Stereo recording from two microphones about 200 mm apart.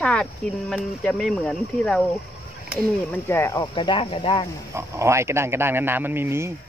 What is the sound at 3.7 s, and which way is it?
Speech, 25° left (ahead or behind).